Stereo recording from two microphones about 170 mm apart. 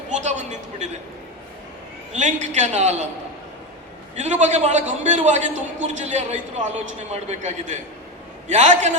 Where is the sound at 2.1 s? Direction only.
45° right (ahead or behind).